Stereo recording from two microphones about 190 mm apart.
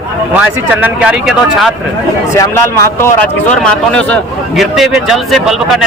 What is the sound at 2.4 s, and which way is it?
Speech, 15° left (ahead or behind).